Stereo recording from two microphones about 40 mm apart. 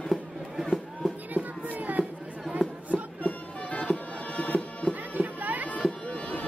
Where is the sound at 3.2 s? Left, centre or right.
Left.